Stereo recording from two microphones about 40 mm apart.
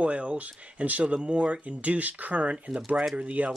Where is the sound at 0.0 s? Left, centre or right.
Right.